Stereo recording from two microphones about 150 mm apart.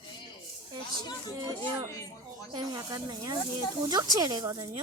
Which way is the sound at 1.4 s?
25° right (ahead or behind).